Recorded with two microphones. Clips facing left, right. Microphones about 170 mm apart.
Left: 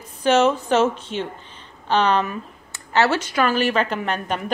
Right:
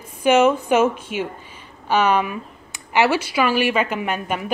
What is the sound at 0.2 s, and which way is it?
A woman's voice, 10° right (ahead or behind).